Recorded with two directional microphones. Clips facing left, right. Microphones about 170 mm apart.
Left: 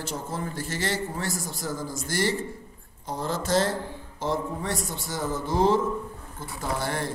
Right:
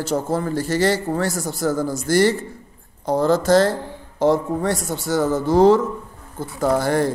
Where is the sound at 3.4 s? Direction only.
40° right (ahead or behind).